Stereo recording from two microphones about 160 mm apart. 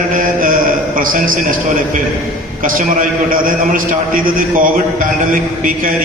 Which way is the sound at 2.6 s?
60° right (ahead or behind).